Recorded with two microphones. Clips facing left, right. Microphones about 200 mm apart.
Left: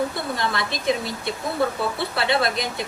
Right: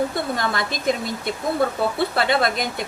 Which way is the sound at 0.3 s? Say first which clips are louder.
Right 1 dB; 50° right (ahead or behind).